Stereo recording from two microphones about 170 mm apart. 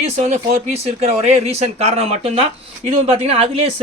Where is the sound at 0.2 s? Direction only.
40° right (ahead or behind).